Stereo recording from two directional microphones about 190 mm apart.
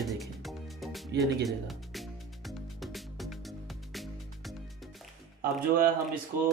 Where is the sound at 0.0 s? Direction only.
Centre (ahead or behind).